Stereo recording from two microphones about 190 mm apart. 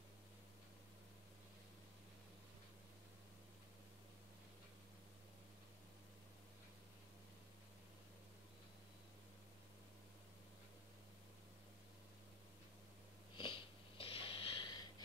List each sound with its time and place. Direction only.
13.4 s wheeze: 25° left (ahead or behind)